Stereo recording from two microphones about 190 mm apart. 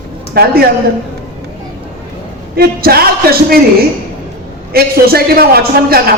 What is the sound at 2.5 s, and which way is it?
A man's voice, 55° right (ahead or behind).